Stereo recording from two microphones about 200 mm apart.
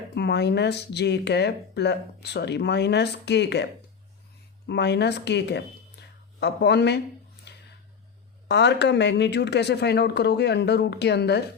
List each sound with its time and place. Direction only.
0.1 s speech: 55° left (ahead or behind)
7.5 s a sound: 55° left (ahead or behind)
8.4 s speech: 60° left (ahead or behind)